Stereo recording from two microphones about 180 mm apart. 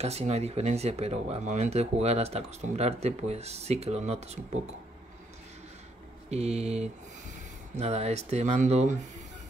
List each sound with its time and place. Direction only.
0.0 s speech: 35° right (ahead or behind)
6.3 s speech: 35° right (ahead or behind)